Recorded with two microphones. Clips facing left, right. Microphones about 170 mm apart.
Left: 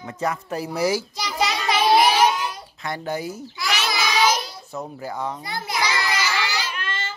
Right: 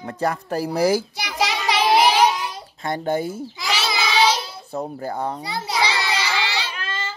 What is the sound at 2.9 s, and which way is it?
Speech, 25° right (ahead or behind).